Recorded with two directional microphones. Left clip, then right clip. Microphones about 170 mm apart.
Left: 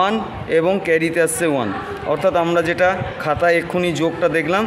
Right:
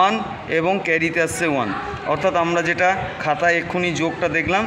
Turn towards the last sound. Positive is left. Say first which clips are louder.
# left 2 dB
turn(degrees=35)  # may be behind; listen again after turning